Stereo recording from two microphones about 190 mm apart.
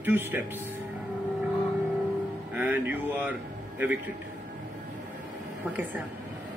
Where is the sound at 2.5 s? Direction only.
10° right (ahead or behind).